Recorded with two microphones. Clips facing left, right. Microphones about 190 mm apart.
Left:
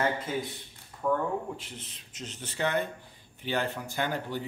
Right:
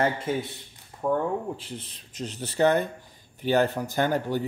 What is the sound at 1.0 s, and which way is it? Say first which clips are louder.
Speech: right 3 dB; 30° right (ahead or behind).